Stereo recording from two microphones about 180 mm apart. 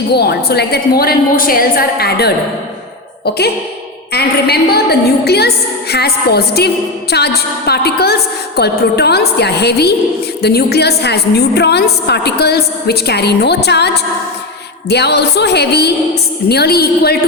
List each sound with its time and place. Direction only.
0.1 s a woman's voice: 65° left (ahead or behind)